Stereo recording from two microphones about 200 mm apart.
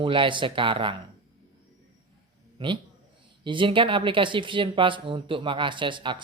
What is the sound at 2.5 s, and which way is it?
A man's voice, 25° right (ahead or behind).